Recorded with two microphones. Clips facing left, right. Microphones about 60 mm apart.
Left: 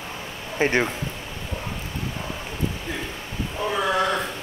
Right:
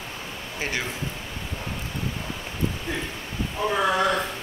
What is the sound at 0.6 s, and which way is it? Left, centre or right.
Speech, left.